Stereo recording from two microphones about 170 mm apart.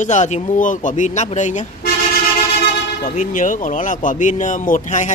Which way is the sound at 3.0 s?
50° left (ahead or behind).